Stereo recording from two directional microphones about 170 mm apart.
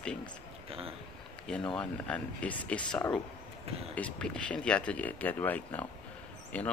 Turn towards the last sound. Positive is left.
turn(degrees=5)  # may be behind; listen again after turning